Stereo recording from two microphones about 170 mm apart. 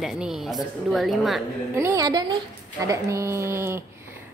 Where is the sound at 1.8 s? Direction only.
20° right (ahead or behind).